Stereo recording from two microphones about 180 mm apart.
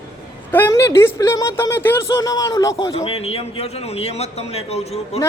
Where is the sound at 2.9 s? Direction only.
35° left (ahead or behind).